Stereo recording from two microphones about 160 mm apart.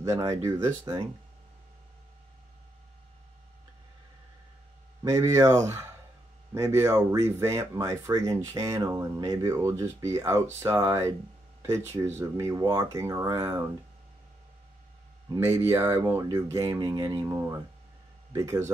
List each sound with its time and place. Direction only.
0.0 s speech: 20° right (ahead or behind)
5.0 s speech: 20° right (ahead or behind)
15.3 s speech: 15° right (ahead or behind)